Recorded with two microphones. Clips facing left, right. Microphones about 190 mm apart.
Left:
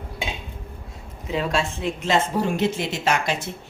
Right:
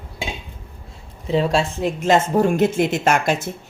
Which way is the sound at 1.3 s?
35° right (ahead or behind).